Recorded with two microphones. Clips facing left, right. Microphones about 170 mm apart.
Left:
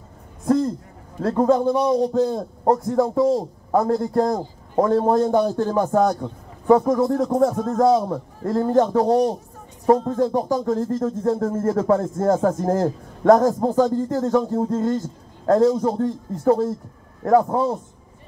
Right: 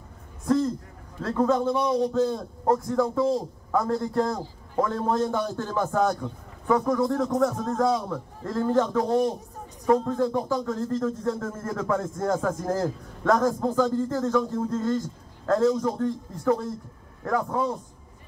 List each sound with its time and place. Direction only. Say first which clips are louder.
1.2 s a man's voice: left 5 dB; 40° left (ahead or behind)